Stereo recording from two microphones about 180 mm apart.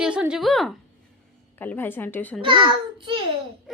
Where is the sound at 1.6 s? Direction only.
10° left (ahead or behind).